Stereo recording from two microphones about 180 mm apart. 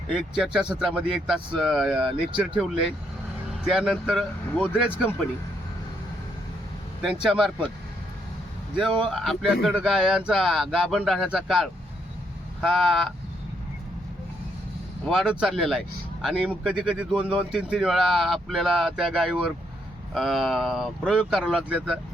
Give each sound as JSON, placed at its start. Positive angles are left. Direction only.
{"t": 0.1, "sound": "speech", "side_deg": -5}
{"t": 3.6, "sound": "speech", "side_deg": -5}
{"t": 7.0, "sound": "speech", "side_deg": -5}
{"t": 9.1, "sound": "speech", "side_deg": 0}
{"t": 15.1, "sound": "speech", "side_deg": 0}